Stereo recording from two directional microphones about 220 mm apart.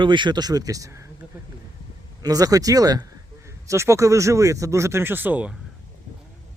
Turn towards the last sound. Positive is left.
turn(degrees=-10)  # may be behind; listen again after turning